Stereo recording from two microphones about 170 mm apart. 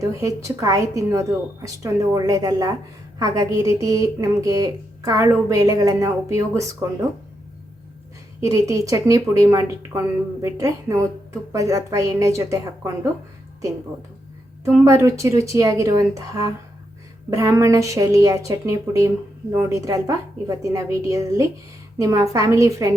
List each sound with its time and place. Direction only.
0.2 s a woman's voice: 20° right (ahead or behind)
8.4 s a woman's voice: 20° right (ahead or behind)
14.6 s a woman's voice: 15° right (ahead or behind)